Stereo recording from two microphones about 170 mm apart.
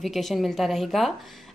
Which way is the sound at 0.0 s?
Centre (ahead or behind).